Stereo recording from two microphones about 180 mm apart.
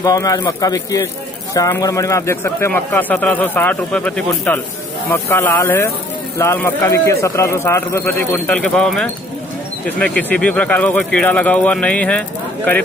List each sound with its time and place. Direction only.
0.0 s a man's voice: 20° left (ahead or behind)